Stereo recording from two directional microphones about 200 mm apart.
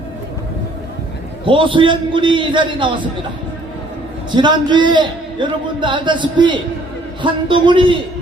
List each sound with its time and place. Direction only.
1.5 s a man's voice: 25° right (ahead or behind)
4.4 s a man's voice: 20° right (ahead or behind)